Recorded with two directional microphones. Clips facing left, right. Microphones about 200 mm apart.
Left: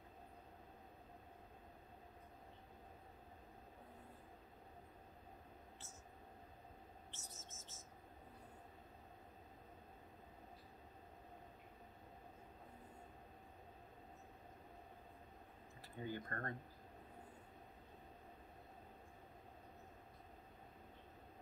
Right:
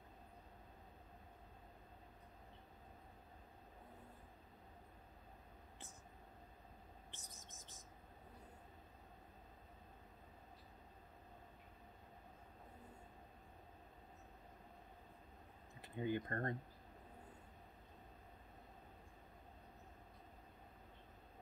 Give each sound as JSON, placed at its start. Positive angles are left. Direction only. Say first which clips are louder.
{"t": 7.1, "sound": "whispering", "louder": "left 2 dB", "side_deg": -15}
{"t": 15.8, "sound": "speech", "louder": "right 6 dB", "side_deg": -20}